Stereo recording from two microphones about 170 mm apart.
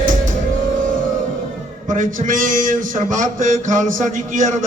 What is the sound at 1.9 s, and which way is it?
Speech, 50° right (ahead or behind).